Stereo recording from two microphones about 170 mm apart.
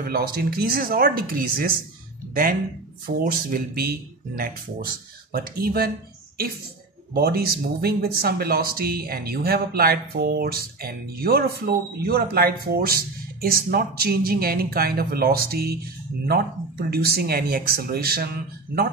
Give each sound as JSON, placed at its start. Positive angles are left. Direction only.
{"t": 0.0, "sound": "speech", "side_deg": -60}
{"t": 3.3, "sound": "speech", "side_deg": -55}
{"t": 7.2, "sound": "speech", "side_deg": -65}